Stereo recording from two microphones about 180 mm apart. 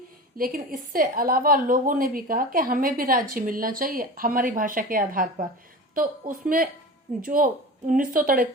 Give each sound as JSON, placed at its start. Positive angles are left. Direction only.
{"t": 0.3, "sound": "a woman's voice", "side_deg": -50}